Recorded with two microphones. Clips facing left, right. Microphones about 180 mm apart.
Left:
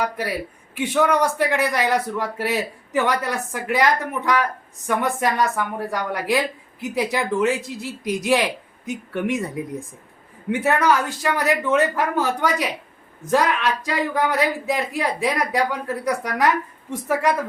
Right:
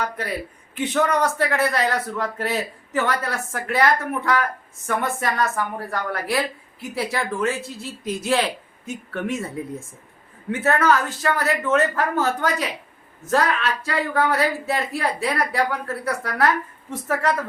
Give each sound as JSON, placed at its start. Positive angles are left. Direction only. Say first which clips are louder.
{"t": 0.0, "sound": "a woman's voice", "louder": "left 2 dB", "side_deg": 10}